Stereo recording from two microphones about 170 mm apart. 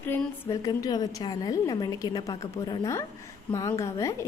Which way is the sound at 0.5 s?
20° left (ahead or behind).